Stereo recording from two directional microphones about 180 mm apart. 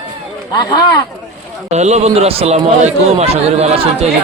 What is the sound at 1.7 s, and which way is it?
A man's voice, 40° right (ahead or behind).